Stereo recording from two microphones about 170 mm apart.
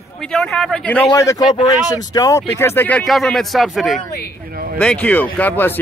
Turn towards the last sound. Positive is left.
turn(degrees=10)  # may be behind; listen again after turning